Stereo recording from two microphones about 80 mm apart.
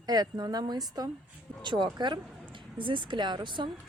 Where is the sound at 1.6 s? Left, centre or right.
Right.